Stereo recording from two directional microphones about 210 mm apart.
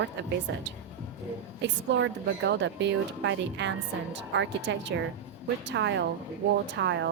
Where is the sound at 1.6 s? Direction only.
60° right (ahead or behind).